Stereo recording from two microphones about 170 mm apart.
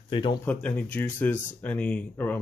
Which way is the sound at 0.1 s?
30° left (ahead or behind).